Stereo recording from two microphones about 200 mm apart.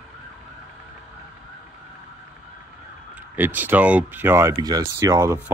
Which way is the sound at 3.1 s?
10° right (ahead or behind).